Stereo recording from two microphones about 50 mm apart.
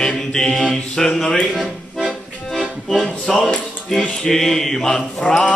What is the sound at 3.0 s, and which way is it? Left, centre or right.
Music, centre.